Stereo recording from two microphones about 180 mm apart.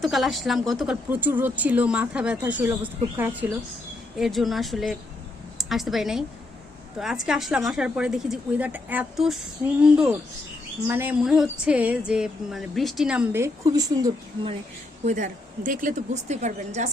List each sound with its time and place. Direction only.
0.0 s a woman's voice: centre (ahead or behind)
1.1 s speech: 10° right (ahead or behind)
4.2 s a woman's voice: centre (ahead or behind); by 14.1 s 20° right (ahead or behind)
15.0 s a woman's voice: 45° right (ahead or behind)